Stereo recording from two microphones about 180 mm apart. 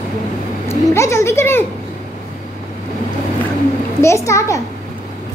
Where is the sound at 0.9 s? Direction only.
15° left (ahead or behind).